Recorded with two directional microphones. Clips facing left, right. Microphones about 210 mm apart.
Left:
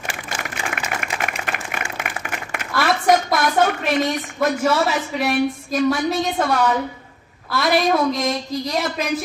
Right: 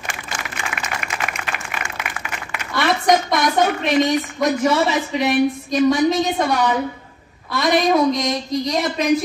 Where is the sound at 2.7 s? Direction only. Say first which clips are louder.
Even; 5° left (ahead or behind).